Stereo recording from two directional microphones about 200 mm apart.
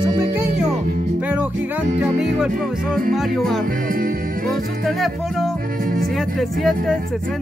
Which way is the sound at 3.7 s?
45° right (ahead or behind).